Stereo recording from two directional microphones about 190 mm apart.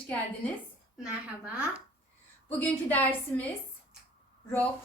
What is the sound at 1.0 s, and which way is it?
Speech, 5° right (ahead or behind).